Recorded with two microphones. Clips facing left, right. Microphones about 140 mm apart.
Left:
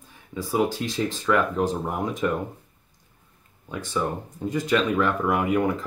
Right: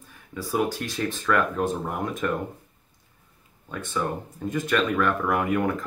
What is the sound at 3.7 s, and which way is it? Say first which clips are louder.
Speech: left 1 dB; 15° left (ahead or behind).